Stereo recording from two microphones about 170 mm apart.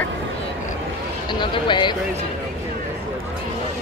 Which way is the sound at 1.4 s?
30° left (ahead or behind).